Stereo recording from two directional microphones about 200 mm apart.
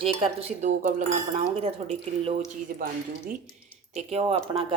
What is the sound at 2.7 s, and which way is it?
Speech, 45° right (ahead or behind).